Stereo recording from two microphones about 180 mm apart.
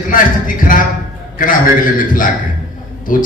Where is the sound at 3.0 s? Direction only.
50° left (ahead or behind).